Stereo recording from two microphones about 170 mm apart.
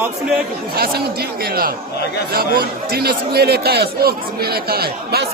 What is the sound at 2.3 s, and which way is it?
A man's voice, 60° right (ahead or behind).